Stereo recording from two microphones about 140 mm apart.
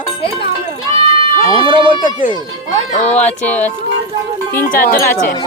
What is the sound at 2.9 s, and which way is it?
Speech, 55° left (ahead or behind).